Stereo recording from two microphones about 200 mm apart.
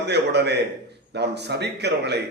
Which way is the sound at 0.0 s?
55° right (ahead or behind).